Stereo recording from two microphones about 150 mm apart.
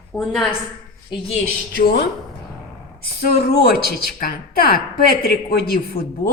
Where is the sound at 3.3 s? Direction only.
90° left.